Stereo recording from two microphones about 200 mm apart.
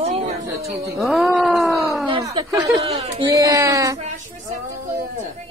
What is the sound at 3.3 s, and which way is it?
Speech, 15° right (ahead or behind).